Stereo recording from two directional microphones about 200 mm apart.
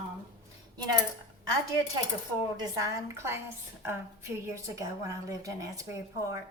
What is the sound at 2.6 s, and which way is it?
Speech, 15° right (ahead or behind).